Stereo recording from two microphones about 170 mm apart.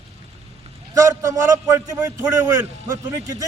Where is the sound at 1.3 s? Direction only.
20° right (ahead or behind).